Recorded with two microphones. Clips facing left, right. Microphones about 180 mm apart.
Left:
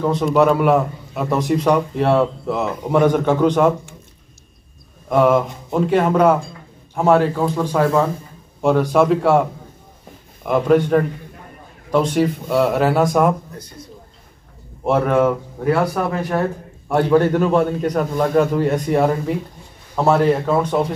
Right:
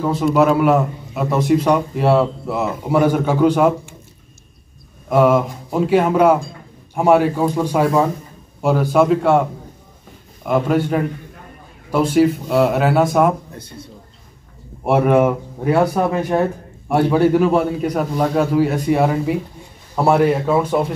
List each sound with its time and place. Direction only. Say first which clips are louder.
0.0 s a man's voice: even; 5° right (ahead or behind)
5.1 s a man's voice: right 1 dB; 5° right (ahead or behind)
10.4 s a man's voice: left 2 dB; centre (ahead or behind)
14.9 s speech: right 2 dB; 15° right (ahead or behind)
16.9 s a man's voice: right 1 dB; 10° right (ahead or behind)